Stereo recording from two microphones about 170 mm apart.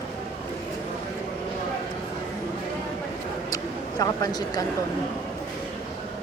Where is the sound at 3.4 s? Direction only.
20° left (ahead or behind).